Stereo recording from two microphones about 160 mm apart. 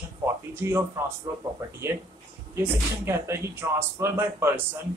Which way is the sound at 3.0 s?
15° right (ahead or behind).